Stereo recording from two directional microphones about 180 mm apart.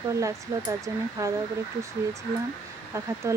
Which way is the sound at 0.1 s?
15° right (ahead or behind).